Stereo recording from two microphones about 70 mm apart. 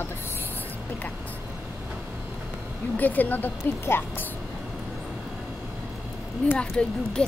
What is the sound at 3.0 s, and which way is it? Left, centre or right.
Speech, left.